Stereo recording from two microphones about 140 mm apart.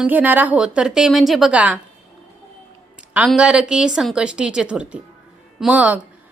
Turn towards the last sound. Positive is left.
turn(degrees=-10)  # may be behind; listen again after turning